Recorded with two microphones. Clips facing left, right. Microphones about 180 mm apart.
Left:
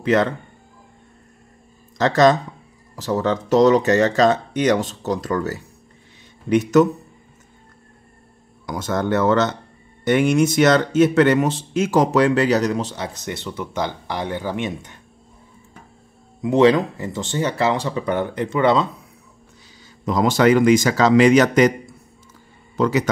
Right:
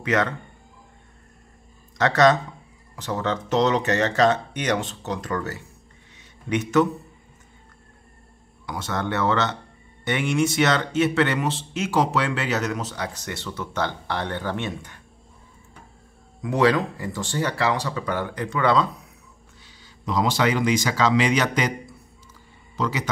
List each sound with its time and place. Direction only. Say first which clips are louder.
0.0 s speech: left 5 dB; 30° left (ahead or behind)
2.0 s speech: left 3 dB; 35° left (ahead or behind)
8.6 s speech: left 6 dB; 45° left (ahead or behind); by 15.0 s 20° left (ahead or behind)
16.3 s speech: left 6 dB; 25° left (ahead or behind)
20.1 s speech: left 6 dB; 50° left (ahead or behind)
22.8 s speech: left 8 dB; 45° left (ahead or behind)